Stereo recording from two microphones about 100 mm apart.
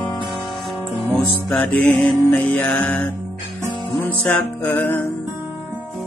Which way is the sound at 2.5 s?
15° left (ahead or behind).